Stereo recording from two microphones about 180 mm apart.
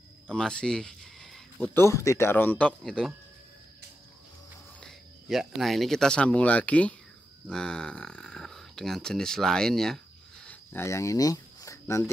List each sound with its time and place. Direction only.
0.3 s speech: 5° left (ahead or behind)
4.7 s speech: centre (ahead or behind)
10.4 s a sound: 10° left (ahead or behind)